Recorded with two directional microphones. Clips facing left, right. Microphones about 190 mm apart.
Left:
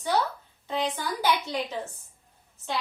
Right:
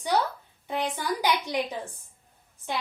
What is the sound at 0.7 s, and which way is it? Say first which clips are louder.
A woman's voice: even; 15° right (ahead or behind).